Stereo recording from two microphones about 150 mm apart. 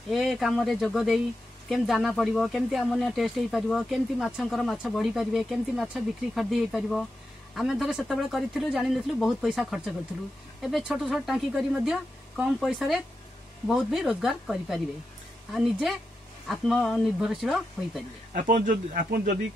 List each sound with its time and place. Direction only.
0.1 s speech: centre (ahead or behind)
18.3 s speech: 60° right (ahead or behind)